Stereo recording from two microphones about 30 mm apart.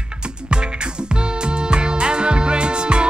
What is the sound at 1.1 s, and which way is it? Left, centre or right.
Music, right.